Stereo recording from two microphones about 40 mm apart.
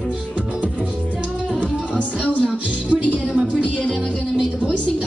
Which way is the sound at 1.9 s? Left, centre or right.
Left.